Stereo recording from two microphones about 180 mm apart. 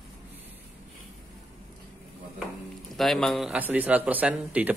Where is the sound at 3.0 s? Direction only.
Centre (ahead or behind).